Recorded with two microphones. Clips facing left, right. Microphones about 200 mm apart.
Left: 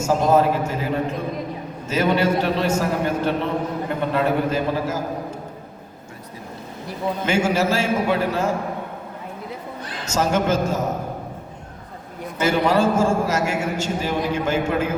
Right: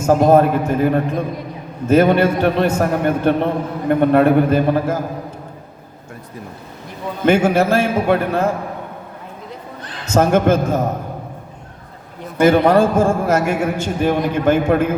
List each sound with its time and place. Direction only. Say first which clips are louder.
0.0 s a man's voice: right 5 dB; 55° right (ahead or behind)
7.3 s a man's voice: right 7 dB; 55° right (ahead or behind)
10.1 s a man's voice: right 6 dB; 55° right (ahead or behind)
12.4 s a man's voice: right 7 dB; 55° right (ahead or behind)